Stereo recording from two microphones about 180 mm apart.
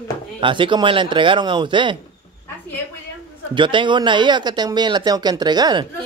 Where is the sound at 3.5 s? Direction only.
25° right (ahead or behind).